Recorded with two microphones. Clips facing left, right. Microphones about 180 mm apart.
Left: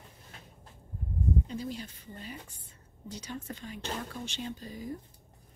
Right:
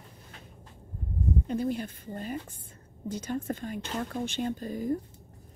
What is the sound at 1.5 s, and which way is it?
Speech, 55° right (ahead or behind).